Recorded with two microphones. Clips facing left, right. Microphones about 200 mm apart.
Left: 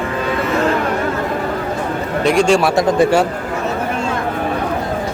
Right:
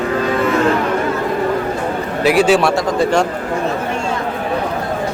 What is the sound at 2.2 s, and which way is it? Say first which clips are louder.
Speech: right 1 dB; 5° right (ahead or behind).